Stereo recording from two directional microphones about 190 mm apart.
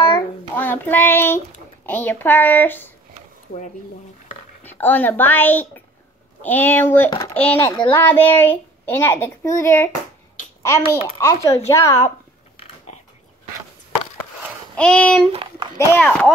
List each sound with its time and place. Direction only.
0.0 s child singing: 10° left (ahead or behind)
1.9 s a child's voice: 10° left (ahead or behind)
4.6 s a child's voice: 10° left (ahead or behind)
14.8 s speech: 5° left (ahead or behind)
15.3 s a child's voice: 20° right (ahead or behind)
15.9 s speech: 5° left (ahead or behind)